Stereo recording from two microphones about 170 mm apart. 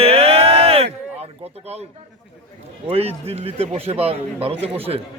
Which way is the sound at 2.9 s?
35° right (ahead or behind).